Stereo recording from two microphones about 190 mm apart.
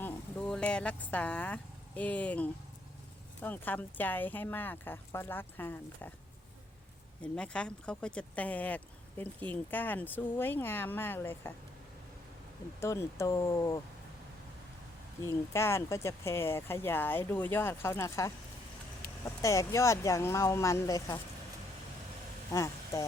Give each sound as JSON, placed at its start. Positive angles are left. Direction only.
{"t": 0.0, "sound": "speech", "side_deg": 5}
{"t": 7.2, "sound": "speech", "side_deg": 5}
{"t": 12.8, "sound": "speech", "side_deg": 15}
{"t": 15.2, "sound": "speech", "side_deg": 15}
{"t": 22.5, "sound": "speech", "side_deg": 15}